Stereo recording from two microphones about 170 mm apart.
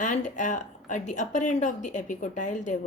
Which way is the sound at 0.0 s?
45° left (ahead or behind).